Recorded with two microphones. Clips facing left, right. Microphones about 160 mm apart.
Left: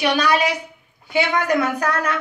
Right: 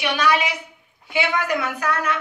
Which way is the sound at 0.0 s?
40° left (ahead or behind).